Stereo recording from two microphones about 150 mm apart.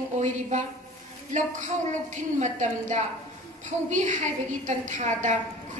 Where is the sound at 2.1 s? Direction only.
55° right (ahead or behind).